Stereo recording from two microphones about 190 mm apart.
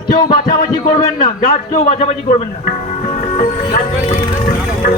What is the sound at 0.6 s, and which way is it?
A man's voice, 30° left (ahead or behind).